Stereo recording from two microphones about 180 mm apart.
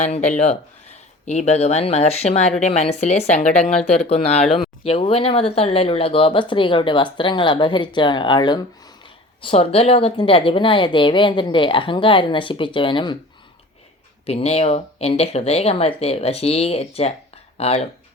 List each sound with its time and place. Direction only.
0.0 s a woman's voice: 40° left (ahead or behind)
14.3 s speech: 35° left (ahead or behind)